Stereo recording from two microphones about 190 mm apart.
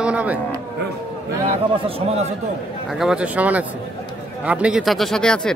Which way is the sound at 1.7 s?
30° right (ahead or behind).